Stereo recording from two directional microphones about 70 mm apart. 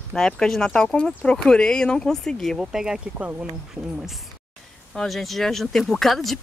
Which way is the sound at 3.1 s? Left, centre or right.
Right.